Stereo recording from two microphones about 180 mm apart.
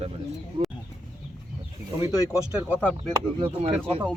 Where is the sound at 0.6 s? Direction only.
25° right (ahead or behind).